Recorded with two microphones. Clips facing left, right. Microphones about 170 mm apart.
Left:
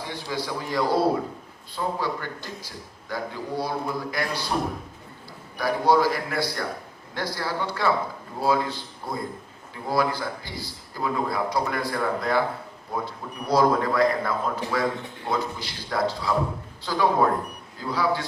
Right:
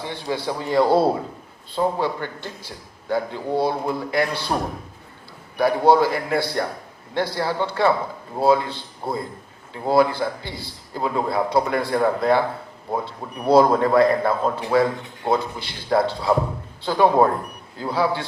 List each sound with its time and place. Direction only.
0.0 s a man's voice: 25° right (ahead or behind)
5.5 s a man's voice: 25° right (ahead or behind)